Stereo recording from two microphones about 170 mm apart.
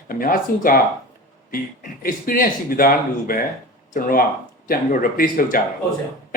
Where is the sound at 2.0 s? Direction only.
55° left (ahead or behind).